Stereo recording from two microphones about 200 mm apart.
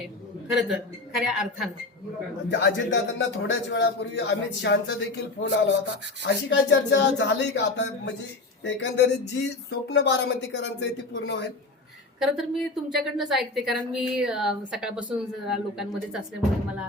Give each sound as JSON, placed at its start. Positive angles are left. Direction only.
{"t": 1.2, "sound": "a woman's voice", "side_deg": 0}
{"t": 2.5, "sound": "speech", "side_deg": 65}
{"t": 12.2, "sound": "a woman's voice", "side_deg": 0}